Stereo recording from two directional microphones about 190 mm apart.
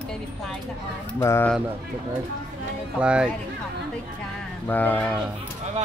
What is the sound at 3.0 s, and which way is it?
Speech, 5° right (ahead or behind).